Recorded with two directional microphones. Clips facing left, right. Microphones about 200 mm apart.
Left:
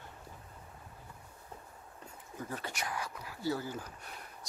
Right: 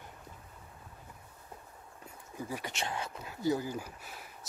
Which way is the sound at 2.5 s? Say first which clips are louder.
Right 1 dB; 10° right (ahead or behind).